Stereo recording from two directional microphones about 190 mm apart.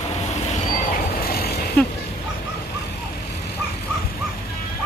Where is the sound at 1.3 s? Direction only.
55° left (ahead or behind).